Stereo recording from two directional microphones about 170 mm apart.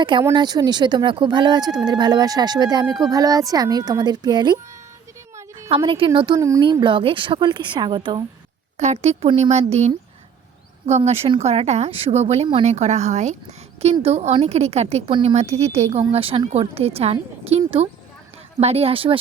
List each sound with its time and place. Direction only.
0.0 s speech: 30° right (ahead or behind)
5.4 s a sound: 20° right (ahead or behind)
5.7 s a woman's voice: 30° right (ahead or behind)
8.8 s a woman's voice: 40° right (ahead or behind)